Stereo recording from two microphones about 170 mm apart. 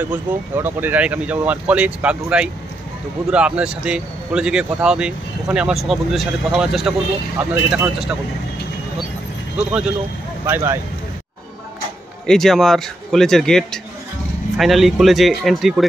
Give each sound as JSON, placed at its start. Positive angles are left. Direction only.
{"t": 0.0, "sound": "a man's voice", "side_deg": -10}
{"t": 9.6, "sound": "speech", "side_deg": -5}
{"t": 12.3, "sound": "a man's voice", "side_deg": 0}